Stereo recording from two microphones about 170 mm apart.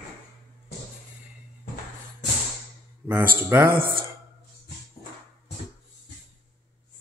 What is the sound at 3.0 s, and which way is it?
Speech, 10° left (ahead or behind).